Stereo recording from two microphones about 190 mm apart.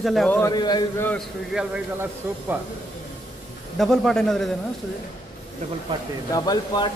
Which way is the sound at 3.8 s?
Centre (ahead or behind).